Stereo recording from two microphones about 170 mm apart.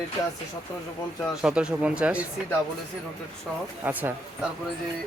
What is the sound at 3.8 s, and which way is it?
Speech, 10° right (ahead or behind).